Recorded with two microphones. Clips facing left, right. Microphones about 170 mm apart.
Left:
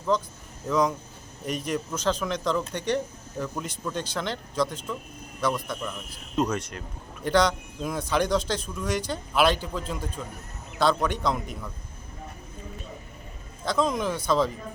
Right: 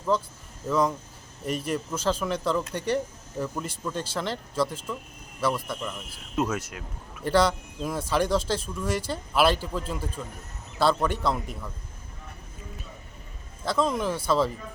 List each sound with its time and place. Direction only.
0.1 s speech: 5° right (ahead or behind)
13.7 s speech: 5° right (ahead or behind)